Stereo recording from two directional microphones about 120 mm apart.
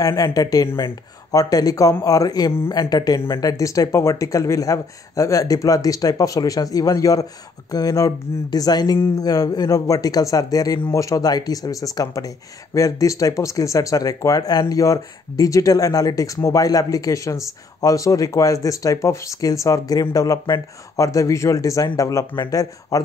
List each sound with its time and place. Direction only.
0.0 s speech: 30° left (ahead or behind)